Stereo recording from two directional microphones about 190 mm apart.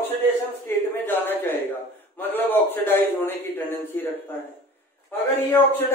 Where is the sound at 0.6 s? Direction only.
10° left (ahead or behind).